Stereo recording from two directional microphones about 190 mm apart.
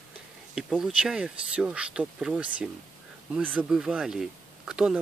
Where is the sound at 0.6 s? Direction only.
Centre (ahead or behind).